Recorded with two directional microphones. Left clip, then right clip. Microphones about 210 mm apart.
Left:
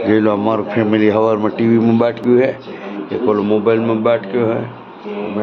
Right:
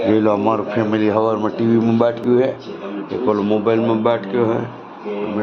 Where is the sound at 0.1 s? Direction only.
5° left (ahead or behind).